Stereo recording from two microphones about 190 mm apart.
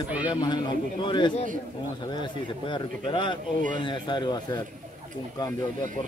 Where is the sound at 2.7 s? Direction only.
25° left (ahead or behind).